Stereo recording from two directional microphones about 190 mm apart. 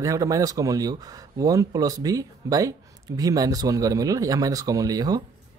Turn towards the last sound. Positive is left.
turn(degrees=-20)  # may be behind; listen again after turning